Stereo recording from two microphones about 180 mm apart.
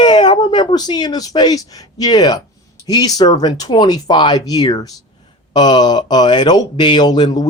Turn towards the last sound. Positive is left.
turn(degrees=25)  # may be behind; listen again after turning